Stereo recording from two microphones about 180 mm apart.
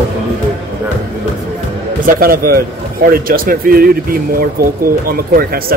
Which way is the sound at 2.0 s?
55° right (ahead or behind).